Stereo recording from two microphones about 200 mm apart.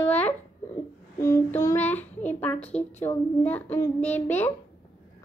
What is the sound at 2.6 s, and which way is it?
Speech, 35° left (ahead or behind).